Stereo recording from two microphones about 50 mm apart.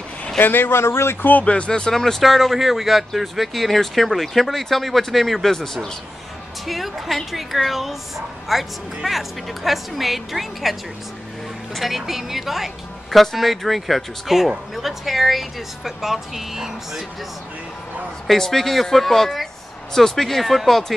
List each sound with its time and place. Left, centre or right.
0.4 s speech: left
1.4 s speech: left; by 17.0 s centre
18.2 s speech: centre